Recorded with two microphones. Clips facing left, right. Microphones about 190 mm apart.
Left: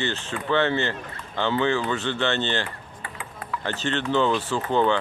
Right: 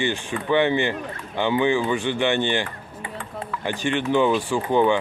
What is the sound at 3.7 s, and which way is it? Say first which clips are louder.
Speech: right 3 dB; 15° right (ahead or behind).